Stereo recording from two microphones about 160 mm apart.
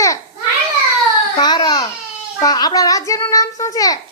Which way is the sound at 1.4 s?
25° left (ahead or behind).